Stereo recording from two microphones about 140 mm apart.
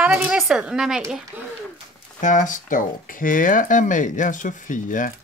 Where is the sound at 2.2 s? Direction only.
65° left (ahead or behind).